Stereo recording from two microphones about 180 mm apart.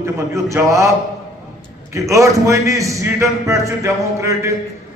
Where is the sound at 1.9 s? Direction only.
15° right (ahead or behind).